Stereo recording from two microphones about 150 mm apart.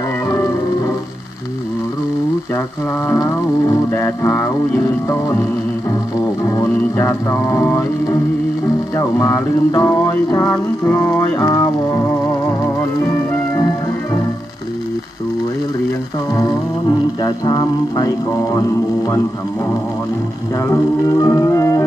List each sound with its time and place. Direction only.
3.9 s music: 15° left (ahead or behind)
6.4 s music: 20° left (ahead or behind)
11.4 s music: 25° left (ahead or behind)
17.2 s music: 25° left (ahead or behind)
20.5 s music: 20° left (ahead or behind)